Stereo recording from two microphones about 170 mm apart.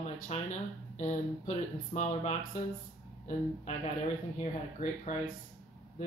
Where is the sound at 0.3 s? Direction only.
40° left (ahead or behind).